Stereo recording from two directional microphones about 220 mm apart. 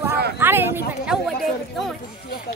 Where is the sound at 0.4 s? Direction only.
10° right (ahead or behind).